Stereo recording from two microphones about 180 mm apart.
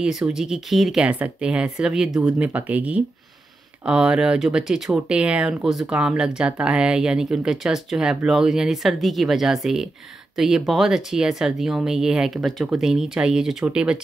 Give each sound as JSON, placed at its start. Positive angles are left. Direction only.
{"t": 0.0, "sound": "speech", "side_deg": -5}